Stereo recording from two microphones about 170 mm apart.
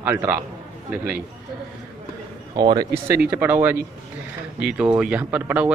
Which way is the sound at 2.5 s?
25° right (ahead or behind).